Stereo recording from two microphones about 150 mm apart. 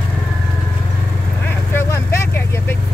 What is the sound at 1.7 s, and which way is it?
Vehicle, 15° left (ahead or behind).